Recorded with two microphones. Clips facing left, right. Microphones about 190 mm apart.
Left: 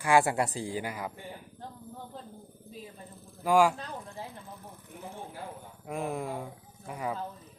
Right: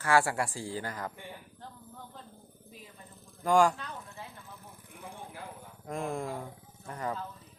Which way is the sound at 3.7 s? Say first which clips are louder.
Left 4 dB; 35° left (ahead or behind).